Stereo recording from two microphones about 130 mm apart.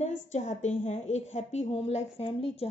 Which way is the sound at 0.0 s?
65° left (ahead or behind).